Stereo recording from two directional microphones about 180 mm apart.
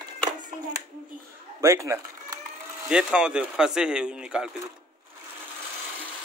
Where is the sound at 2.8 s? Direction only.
5° right (ahead or behind).